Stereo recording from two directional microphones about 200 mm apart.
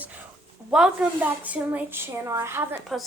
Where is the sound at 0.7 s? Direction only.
5° right (ahead or behind).